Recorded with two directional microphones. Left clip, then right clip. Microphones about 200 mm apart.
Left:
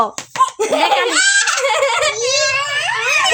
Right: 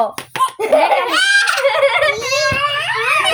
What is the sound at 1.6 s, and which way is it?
Turkey, 55° left (ahead or behind).